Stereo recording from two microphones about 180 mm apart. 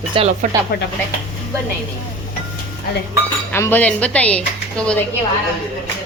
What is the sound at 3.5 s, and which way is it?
Speech, 10° left (ahead or behind).